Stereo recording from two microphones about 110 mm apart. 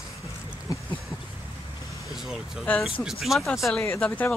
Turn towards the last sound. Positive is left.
turn(degrees=20)  # may be behind; listen again after turning